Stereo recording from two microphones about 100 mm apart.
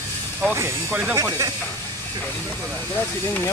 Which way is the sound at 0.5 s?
25° right (ahead or behind).